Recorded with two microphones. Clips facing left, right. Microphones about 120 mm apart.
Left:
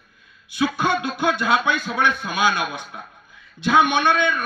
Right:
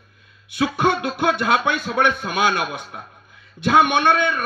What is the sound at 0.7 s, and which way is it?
A man's voice, 60° right (ahead or behind).